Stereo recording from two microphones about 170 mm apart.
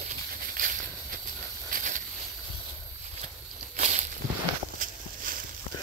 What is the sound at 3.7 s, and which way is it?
Walk, 45° right (ahead or behind).